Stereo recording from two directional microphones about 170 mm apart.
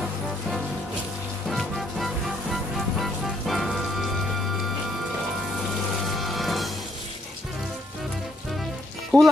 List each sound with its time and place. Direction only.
1.5 s music: centre (ahead or behind)
6.0 s music: centre (ahead or behind)
9.1 s music: 25° right (ahead or behind)